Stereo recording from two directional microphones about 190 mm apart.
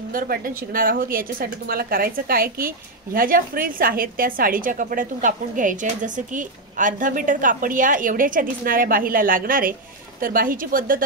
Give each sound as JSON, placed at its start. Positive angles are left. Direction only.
{"t": 0.1, "sound": "a woman's voice", "side_deg": -50}